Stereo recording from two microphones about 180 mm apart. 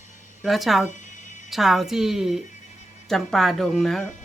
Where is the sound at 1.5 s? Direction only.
Centre (ahead or behind).